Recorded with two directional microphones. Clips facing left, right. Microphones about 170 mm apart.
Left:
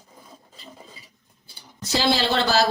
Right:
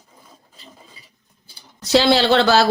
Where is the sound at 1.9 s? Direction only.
75° right (ahead or behind).